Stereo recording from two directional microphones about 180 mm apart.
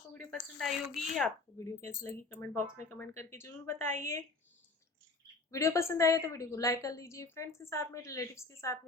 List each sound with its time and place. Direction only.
0.1 s a woman's voice: 5° left (ahead or behind)
1.9 s a woman's voice: 10° left (ahead or behind)
3.8 s speech: 40° right (ahead or behind)
5.5 s a woman's voice: 15° left (ahead or behind)